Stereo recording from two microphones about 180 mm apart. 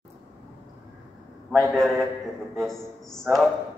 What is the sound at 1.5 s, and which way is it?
A man's voice, 5° left (ahead or behind).